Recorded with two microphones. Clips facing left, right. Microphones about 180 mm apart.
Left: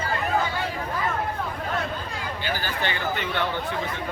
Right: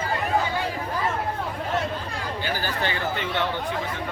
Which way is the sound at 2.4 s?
40° right (ahead or behind).